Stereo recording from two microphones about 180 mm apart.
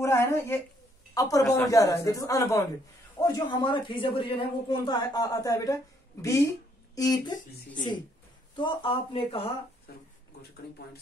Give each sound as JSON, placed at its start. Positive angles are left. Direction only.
{"t": 0.0, "sound": "a woman's voice", "side_deg": 15}
{"t": 8.5, "sound": "a man's voice", "side_deg": 30}